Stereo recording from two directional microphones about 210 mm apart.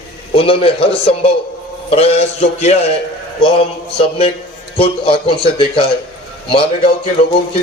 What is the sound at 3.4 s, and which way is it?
A man's voice, 25° left (ahead or behind).